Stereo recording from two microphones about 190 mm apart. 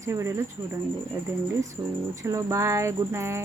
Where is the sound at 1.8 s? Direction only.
15° right (ahead or behind).